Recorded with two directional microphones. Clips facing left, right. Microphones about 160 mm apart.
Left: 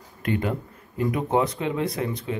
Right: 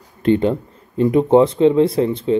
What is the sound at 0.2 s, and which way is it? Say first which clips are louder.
Speech: right 10 dB; 30° right (ahead or behind).